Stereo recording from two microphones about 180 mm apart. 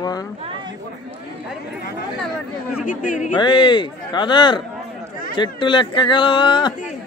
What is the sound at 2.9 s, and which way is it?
Speech, 50° left (ahead or behind).